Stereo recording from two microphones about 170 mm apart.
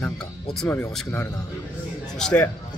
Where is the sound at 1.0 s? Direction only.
15° left (ahead or behind).